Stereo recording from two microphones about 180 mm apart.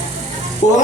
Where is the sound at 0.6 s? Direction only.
40° left (ahead or behind).